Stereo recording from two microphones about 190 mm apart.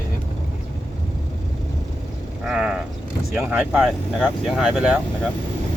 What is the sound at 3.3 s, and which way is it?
Speech, 10° right (ahead or behind).